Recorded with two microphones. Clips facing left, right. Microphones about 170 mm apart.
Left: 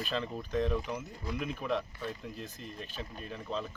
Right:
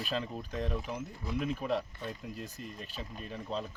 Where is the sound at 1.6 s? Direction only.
40° right (ahead or behind).